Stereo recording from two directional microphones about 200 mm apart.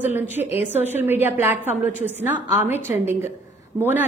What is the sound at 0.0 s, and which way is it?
A woman's voice, 10° right (ahead or behind).